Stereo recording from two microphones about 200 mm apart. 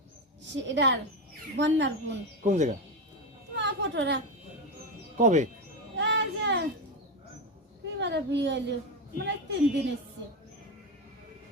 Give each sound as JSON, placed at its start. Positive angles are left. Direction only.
{"t": 0.5, "sound": "a woman's voice", "side_deg": -60}
{"t": 2.4, "sound": "speech", "side_deg": -35}
{"t": 3.5, "sound": "a sound", "side_deg": -60}
{"t": 5.1, "sound": "speech", "side_deg": -35}
{"t": 6.0, "sound": "a sound", "side_deg": -60}
{"t": 7.9, "sound": "a woman's voice", "side_deg": -60}